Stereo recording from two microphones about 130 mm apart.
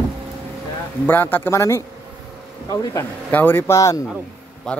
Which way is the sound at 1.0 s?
15° left (ahead or behind).